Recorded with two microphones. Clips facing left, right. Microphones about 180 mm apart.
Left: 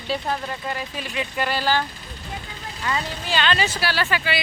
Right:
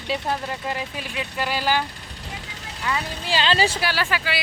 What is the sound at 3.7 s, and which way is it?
Speech, 15° right (ahead or behind).